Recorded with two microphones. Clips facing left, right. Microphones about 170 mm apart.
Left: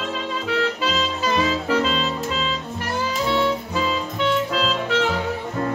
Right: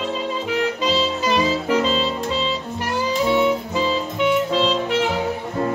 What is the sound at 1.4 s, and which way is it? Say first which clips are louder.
Music: right 2 dB; 30° right (ahead or behind).